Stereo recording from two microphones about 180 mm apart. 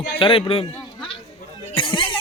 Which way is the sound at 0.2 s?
30° left (ahead or behind).